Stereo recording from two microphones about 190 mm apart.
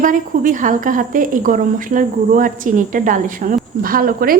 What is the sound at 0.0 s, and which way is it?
A woman's voice, 45° right (ahead or behind).